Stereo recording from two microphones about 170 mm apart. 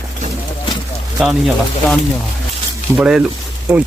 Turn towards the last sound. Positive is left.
turn(degrees=-15)  # may be behind; listen again after turning